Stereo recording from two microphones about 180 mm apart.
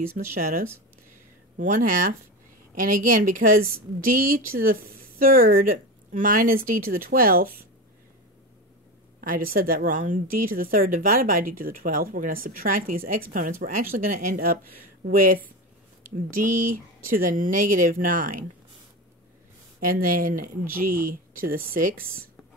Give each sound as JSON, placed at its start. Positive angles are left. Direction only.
{"t": 0.2, "sound": "a woman's voice", "side_deg": -45}
{"t": 1.6, "sound": "a woman's voice", "side_deg": -50}
{"t": 9.2, "sound": "a woman's voice", "side_deg": -50}
{"t": 19.8, "sound": "a woman's voice", "side_deg": -50}